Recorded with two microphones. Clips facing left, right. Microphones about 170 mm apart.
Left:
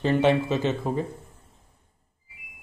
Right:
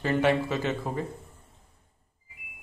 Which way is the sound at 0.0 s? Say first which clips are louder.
Left 3 dB; 20° left (ahead or behind).